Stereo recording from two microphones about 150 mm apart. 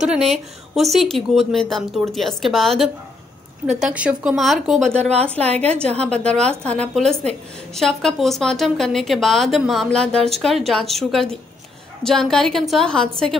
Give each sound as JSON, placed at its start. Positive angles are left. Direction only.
{"t": 0.3, "sound": "speech", "side_deg": 0}
{"t": 4.9, "sound": "a woman's voice", "side_deg": -45}
{"t": 5.2, "sound": "a woman's voice", "side_deg": 10}